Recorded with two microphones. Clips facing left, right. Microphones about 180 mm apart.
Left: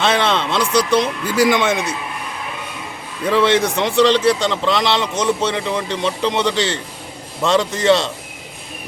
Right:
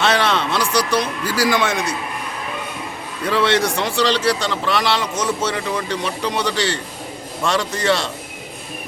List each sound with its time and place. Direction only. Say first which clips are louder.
0.0 s speech: left 1 dB; 20° left (ahead or behind)
3.2 s speech: left 3 dB; 20° left (ahead or behind)